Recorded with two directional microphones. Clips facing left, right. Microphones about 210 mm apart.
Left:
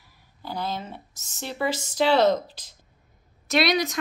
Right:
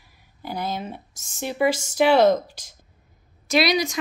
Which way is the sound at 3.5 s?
Centre (ahead or behind).